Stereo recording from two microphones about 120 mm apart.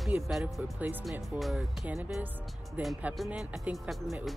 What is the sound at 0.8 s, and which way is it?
Speech, 15° right (ahead or behind).